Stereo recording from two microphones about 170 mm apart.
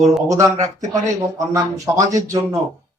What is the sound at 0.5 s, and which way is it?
Speech, 45° right (ahead or behind).